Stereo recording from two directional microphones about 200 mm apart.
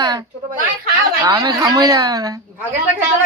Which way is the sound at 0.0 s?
20° right (ahead or behind).